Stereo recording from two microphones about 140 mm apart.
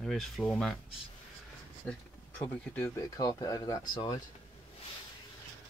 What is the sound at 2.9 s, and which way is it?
Speech, 25° left (ahead or behind).